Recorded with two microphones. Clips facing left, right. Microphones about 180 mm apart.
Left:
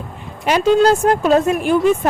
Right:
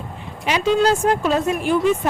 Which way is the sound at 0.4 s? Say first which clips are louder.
Left 5 dB; 45° left (ahead or behind).